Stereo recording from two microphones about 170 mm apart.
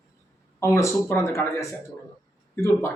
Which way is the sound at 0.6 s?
15° left (ahead or behind).